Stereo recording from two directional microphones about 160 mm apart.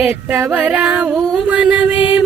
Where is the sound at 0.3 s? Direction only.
10° right (ahead or behind).